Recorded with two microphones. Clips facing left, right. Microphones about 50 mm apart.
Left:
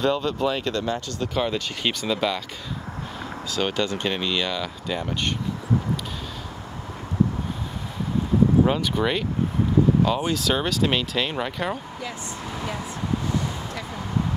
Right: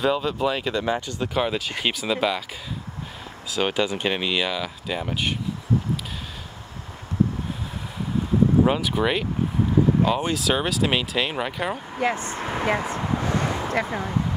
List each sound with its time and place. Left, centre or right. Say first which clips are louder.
0.0 s speech: even; centre
3.4 s speech: right 2 dB; centre
8.6 s speech: right 1 dB; centre
12.0 s speech: right 8 dB; right